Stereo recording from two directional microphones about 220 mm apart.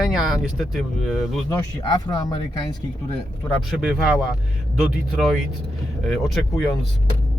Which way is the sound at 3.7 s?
5° right (ahead or behind).